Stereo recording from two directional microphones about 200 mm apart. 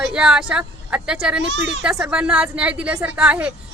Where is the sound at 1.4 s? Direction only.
60° right (ahead or behind).